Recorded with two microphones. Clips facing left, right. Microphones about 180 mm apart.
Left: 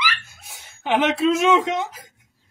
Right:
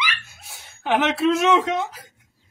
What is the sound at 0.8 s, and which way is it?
Speech, 15° left (ahead or behind).